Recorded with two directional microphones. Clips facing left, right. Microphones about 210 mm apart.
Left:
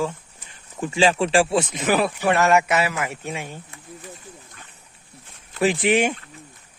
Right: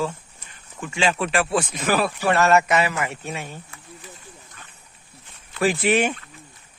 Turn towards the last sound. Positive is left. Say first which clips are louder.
# left 1 dB
turn(degrees=15)  # may be behind; listen again after turning